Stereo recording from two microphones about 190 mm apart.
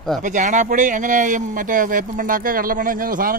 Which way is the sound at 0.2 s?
40° right (ahead or behind).